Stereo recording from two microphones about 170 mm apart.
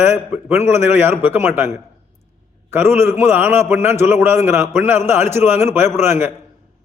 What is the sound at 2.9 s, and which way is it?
A man's voice, 15° right (ahead or behind).